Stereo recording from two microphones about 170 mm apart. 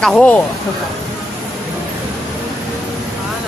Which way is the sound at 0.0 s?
5° left (ahead or behind).